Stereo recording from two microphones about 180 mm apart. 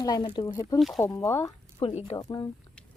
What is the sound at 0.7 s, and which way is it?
Speech, centre (ahead or behind).